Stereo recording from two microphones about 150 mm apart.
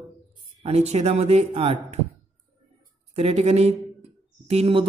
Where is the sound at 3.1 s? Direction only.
45° right (ahead or behind).